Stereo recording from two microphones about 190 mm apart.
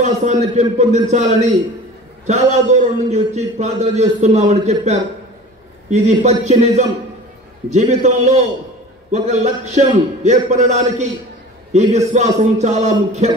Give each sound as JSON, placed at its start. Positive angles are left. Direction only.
{"t": 0.0, "sound": "a man's voice", "side_deg": -40}